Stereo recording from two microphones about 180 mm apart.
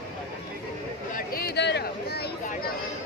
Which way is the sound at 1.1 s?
55° left (ahead or behind).